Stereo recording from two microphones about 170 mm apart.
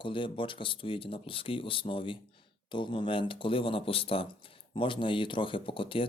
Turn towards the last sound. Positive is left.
turn(degrees=30)  # may be behind; listen again after turning